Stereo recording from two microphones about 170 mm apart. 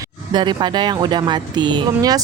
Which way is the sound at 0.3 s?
25° right (ahead or behind).